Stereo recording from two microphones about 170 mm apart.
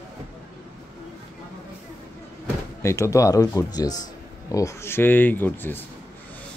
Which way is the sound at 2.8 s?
15° left (ahead or behind).